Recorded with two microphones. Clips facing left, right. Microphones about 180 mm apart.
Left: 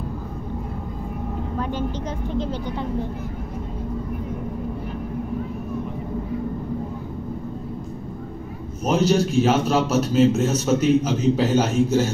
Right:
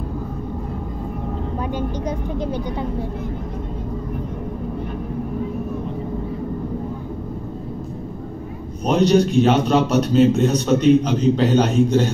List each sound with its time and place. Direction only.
1.6 s vehicle: 10° right (ahead or behind)
8.8 s a man's voice: 5° left (ahead or behind)